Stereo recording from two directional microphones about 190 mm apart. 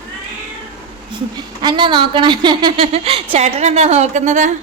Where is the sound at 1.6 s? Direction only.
25° right (ahead or behind).